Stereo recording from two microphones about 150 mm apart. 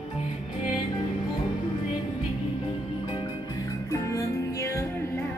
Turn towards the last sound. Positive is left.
turn(degrees=20)  # may be behind; listen again after turning